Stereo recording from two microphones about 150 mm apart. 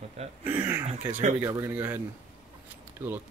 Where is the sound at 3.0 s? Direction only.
15° right (ahead or behind).